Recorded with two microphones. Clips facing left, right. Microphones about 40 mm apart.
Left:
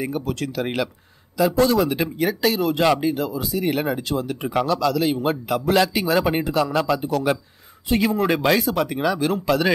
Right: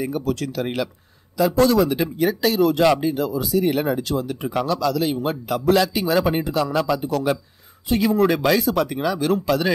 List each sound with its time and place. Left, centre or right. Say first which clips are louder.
0.0 s speech: right 2 dB; left
6.1 s speech: even; left
8.3 s speech: even; centre
8.8 s speech: even; left